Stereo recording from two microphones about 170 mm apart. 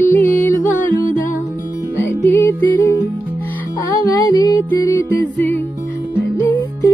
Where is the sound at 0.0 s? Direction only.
10° left (ahead or behind).